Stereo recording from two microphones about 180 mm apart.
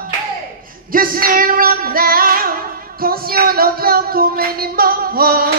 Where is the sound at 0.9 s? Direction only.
50° right (ahead or behind).